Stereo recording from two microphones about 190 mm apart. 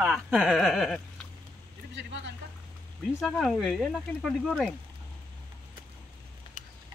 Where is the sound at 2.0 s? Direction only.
70° right (ahead or behind).